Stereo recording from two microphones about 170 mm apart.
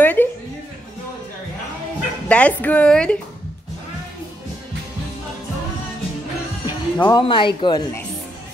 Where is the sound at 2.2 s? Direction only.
5° left (ahead or behind).